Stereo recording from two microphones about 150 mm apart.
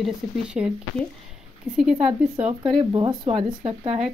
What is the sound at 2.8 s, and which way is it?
Speech, 30° right (ahead or behind).